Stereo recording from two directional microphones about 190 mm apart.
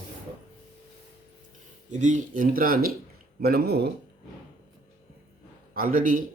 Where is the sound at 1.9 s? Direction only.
40° right (ahead or behind); by 3.8 s 55° right (ahead or behind).